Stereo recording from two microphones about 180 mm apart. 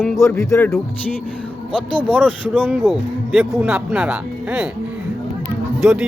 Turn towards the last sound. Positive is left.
turn(degrees=0)  # may be behind; listen again after turning